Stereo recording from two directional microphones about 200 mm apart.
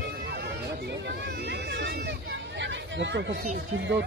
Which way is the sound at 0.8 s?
55° right (ahead or behind).